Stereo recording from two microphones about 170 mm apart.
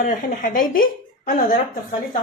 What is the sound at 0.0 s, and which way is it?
A woman's voice, 50° left (ahead or behind).